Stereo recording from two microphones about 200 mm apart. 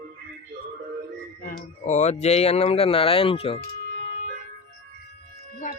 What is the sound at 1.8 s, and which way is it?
Speech, 35° left (ahead or behind).